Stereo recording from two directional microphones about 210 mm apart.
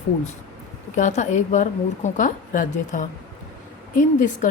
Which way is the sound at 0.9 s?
35° left (ahead or behind).